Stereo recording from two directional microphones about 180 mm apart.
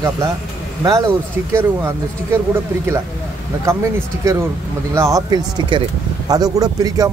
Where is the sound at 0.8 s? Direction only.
20° right (ahead or behind).